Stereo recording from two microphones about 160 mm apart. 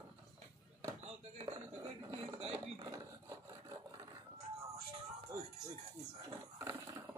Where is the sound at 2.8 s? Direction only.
25° right (ahead or behind).